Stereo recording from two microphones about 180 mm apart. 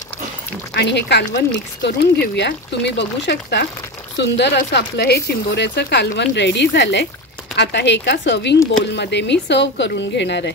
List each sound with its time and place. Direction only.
0.7 s speech: 70° left (ahead or behind)